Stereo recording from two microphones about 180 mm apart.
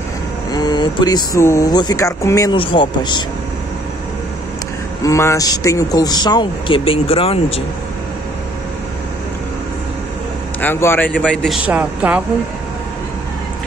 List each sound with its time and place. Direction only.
0.5 s speech: 25° left (ahead or behind)
2.5 s speech: 30° left (ahead or behind)
5.0 s speech: 15° left (ahead or behind)
10.6 s a man's voice: 10° left (ahead or behind)
11.6 s speech: 10° right (ahead or behind)